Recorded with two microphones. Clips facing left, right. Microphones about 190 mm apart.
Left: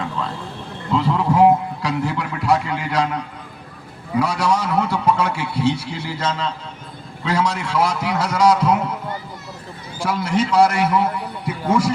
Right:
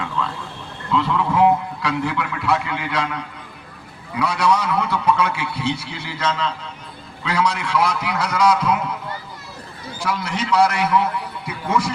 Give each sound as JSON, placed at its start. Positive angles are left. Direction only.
{"t": 0.2, "sound": "a man's voice", "side_deg": 35}
{"t": 10.0, "sound": "a man's voice", "side_deg": 45}